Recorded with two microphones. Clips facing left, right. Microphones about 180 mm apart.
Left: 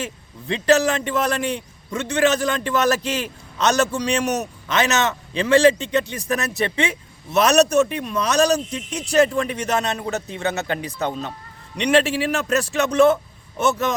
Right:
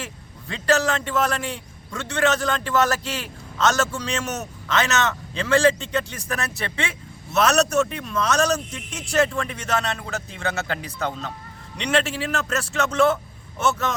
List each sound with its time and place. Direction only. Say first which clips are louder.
0.0 s a man's voice: left 6 dB; 20° left (ahead or behind)